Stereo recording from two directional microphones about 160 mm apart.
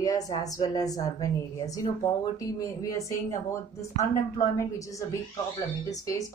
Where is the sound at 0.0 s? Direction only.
20° left (ahead or behind).